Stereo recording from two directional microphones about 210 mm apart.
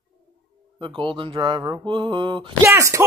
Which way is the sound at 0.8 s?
25° right (ahead or behind).